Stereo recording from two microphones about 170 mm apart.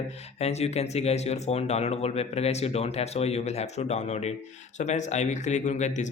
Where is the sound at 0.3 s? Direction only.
40° left (ahead or behind).